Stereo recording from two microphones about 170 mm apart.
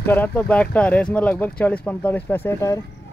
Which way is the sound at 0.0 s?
10° left (ahead or behind).